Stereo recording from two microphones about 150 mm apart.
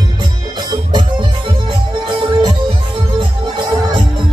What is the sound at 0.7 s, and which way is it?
Music, 30° right (ahead or behind).